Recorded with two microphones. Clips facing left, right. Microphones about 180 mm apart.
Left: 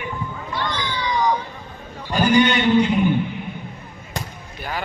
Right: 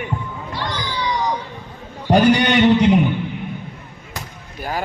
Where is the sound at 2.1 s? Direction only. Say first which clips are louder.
Right 3 dB; 80° right.